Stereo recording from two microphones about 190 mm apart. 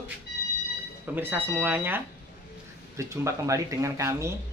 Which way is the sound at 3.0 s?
15° right (ahead or behind).